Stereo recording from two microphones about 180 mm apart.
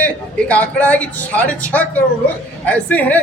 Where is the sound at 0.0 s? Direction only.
10° left (ahead or behind).